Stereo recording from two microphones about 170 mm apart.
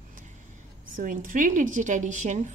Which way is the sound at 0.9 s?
50° right (ahead or behind).